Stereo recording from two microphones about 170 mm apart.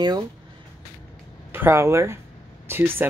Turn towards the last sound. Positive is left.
turn(degrees=-15)  # may be behind; listen again after turning